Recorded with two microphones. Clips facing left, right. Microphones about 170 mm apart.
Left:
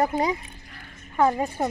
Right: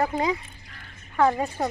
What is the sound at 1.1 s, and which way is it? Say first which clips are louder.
Speech: even; 20° left (ahead or behind).